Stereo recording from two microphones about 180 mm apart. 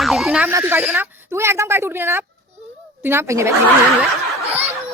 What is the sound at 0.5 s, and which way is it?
A woman's voice, 10° right (ahead or behind).